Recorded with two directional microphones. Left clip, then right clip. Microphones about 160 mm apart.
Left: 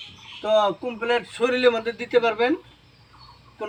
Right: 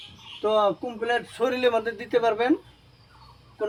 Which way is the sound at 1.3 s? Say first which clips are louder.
Left 3 dB; 20° right (ahead or behind).